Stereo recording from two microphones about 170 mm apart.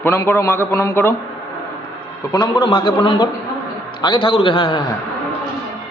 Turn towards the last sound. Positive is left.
turn(degrees=30)  # may be behind; listen again after turning